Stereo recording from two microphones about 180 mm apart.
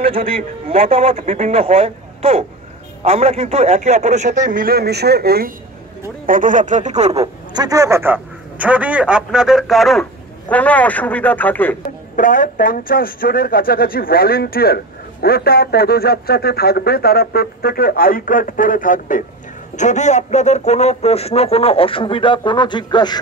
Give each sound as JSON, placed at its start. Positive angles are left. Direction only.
{"t": 0.7, "sound": "a man's voice", "side_deg": -30}
{"t": 6.2, "sound": "speech", "side_deg": -45}
{"t": 7.5, "sound": "a man's voice", "side_deg": -20}
{"t": 12.2, "sound": "speech", "side_deg": 50}